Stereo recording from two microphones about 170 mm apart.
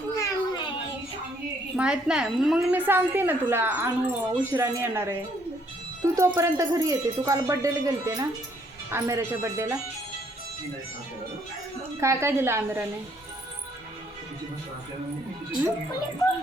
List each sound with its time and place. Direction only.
0.2 s a sound: 25° left (ahead or behind)
1.7 s a woman's voice: 5° right (ahead or behind)
6.1 s a woman's voice: 20° right (ahead or behind)
11.9 s a woman's voice: 15° right (ahead or behind)